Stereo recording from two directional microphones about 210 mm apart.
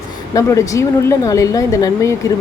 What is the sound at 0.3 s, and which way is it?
Speech, 15° left (ahead or behind).